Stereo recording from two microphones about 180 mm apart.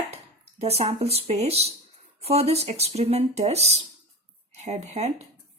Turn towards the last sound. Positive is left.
turn(degrees=-40)  # may be behind; listen again after turning